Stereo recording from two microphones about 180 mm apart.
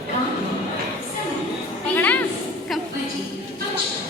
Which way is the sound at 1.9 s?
10° left (ahead or behind).